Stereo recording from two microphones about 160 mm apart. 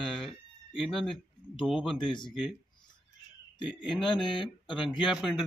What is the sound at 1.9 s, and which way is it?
Speech, 30° left (ahead or behind).